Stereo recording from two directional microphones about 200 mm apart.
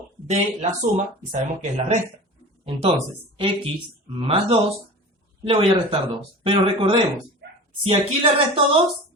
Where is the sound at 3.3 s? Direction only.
25° right (ahead or behind).